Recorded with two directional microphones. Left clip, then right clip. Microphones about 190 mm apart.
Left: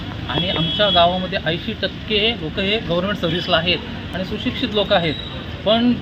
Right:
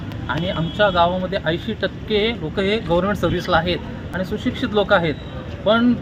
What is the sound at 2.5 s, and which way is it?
Speech, 35° right (ahead or behind).